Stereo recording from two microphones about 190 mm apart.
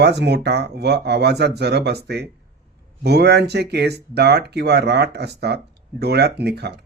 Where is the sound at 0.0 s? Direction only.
60° right (ahead or behind).